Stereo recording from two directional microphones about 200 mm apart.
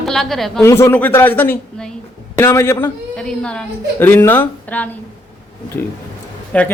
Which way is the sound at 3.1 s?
5° left (ahead or behind).